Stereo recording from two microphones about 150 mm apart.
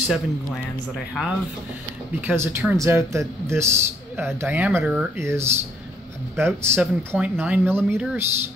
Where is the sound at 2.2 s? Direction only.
15° right (ahead or behind).